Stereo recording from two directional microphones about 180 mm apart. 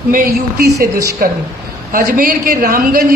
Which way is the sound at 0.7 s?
15° right (ahead or behind).